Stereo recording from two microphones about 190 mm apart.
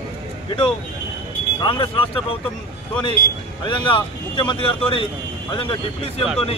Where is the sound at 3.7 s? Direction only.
25° left (ahead or behind).